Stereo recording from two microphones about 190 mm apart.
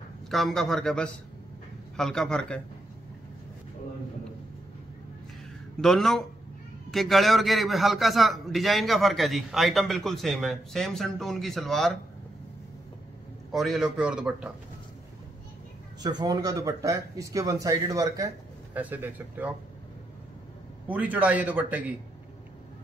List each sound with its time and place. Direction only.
0.3 s a man's voice: centre (ahead or behind)
5.8 s a man's voice: centre (ahead or behind)
13.5 s a man's voice: centre (ahead or behind)
16.0 s speech: 20° right (ahead or behind)
20.9 s speech: 10° right (ahead or behind)